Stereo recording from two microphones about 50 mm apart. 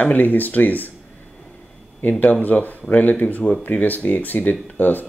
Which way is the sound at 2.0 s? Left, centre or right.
Left.